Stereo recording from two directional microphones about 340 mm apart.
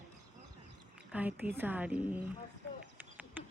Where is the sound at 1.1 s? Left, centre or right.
Centre.